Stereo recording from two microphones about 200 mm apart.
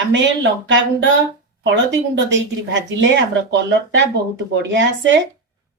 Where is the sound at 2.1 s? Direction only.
65° right (ahead or behind).